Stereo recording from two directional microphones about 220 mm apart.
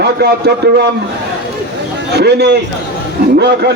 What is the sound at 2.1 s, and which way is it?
A man's voice, 50° right (ahead or behind).